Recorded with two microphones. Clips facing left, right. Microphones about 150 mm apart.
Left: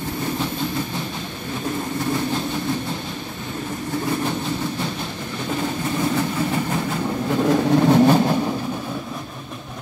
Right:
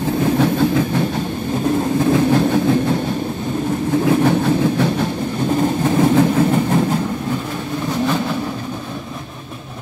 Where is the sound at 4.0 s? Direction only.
80° right; by 5.0 s 65° right (ahead or behind).